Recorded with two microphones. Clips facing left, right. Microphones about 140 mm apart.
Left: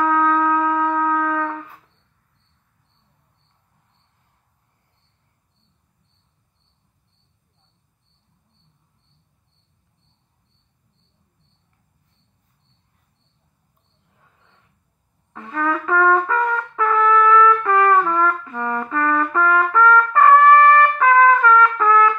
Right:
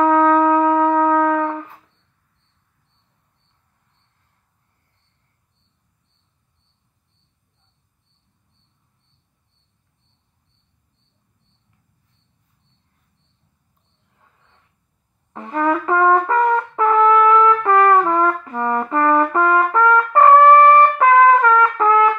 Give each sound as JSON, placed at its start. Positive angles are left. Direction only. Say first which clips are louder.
{"t": 0.0, "sound": "shofar", "louder": "right 5 dB", "side_deg": -30}
{"t": 15.3, "sound": "music", "louder": "right 4 dB", "side_deg": -30}
{"t": 16.0, "sound": "brass instrument", "louder": "right 2 dB", "side_deg": -30}